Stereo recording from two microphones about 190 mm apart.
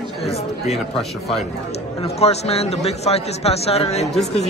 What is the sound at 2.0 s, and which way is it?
A man's voice, 35° left (ahead or behind).